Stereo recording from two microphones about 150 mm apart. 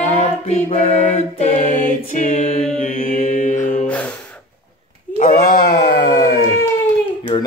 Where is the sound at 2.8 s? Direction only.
55° left (ahead or behind).